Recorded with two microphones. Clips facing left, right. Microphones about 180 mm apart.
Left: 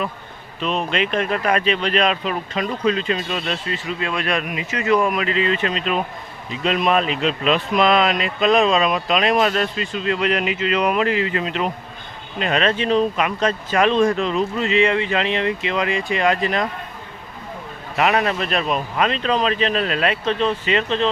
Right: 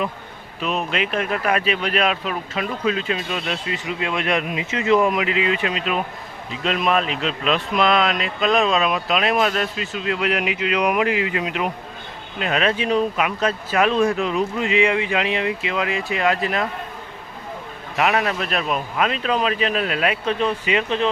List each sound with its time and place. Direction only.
0.6 s speech: 5° right (ahead or behind)
3.8 s speech: 20° right (ahead or behind); by 16.6 s 5° right (ahead or behind)
17.9 s speech: centre (ahead or behind)